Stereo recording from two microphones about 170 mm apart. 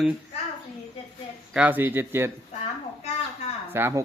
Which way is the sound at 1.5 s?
10° right (ahead or behind).